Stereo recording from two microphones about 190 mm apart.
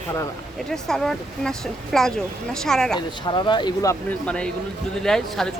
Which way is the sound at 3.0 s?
25° left (ahead or behind).